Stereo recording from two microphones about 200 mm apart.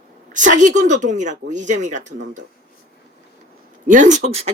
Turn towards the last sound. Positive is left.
turn(degrees=-35)  # may be behind; listen again after turning